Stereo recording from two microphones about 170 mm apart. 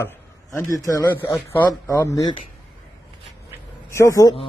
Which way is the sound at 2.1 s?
25° left (ahead or behind).